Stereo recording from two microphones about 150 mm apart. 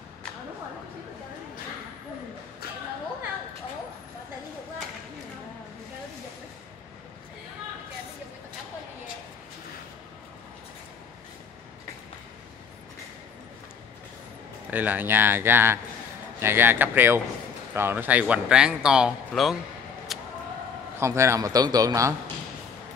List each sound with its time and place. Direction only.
14.7 s speech: 10° right (ahead or behind)
20.1 s a sound: centre (ahead or behind)
21.0 s a man's voice: 20° right (ahead or behind)